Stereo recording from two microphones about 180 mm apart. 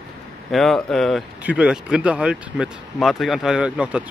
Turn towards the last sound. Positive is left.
turn(degrees=-5)  # may be behind; listen again after turning